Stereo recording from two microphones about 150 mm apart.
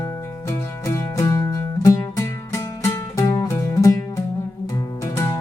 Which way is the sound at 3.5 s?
20° left (ahead or behind).